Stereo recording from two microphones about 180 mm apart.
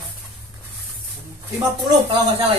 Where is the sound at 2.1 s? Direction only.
30° right (ahead or behind).